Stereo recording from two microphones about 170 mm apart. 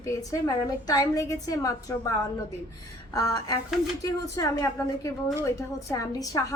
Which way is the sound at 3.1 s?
20° left (ahead or behind).